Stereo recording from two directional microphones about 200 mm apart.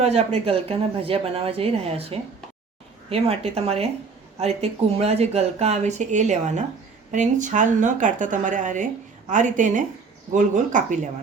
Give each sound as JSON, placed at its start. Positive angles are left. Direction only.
{"t": 0.0, "sound": "speech", "side_deg": -30}